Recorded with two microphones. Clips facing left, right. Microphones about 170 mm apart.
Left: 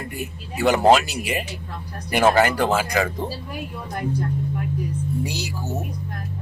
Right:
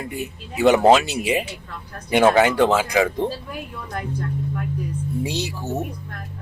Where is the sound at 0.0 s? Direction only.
20° right (ahead or behind).